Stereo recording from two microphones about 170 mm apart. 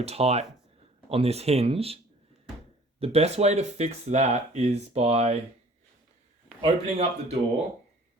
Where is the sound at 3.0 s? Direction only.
35° right (ahead or behind).